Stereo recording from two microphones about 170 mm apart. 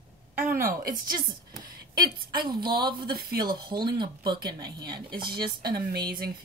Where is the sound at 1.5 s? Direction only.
25° right (ahead or behind).